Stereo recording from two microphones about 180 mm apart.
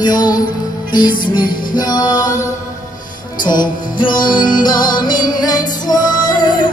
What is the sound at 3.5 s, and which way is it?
Music, 25° left (ahead or behind).